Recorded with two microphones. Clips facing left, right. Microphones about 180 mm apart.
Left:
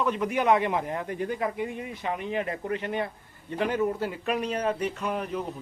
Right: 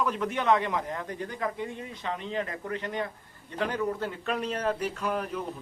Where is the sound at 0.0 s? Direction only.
Centre (ahead or behind).